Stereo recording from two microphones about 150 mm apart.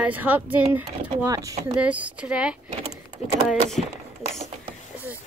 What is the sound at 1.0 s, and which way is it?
Speech, 25° right (ahead or behind).